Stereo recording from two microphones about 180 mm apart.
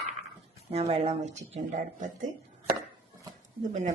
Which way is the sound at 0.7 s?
35° right (ahead or behind).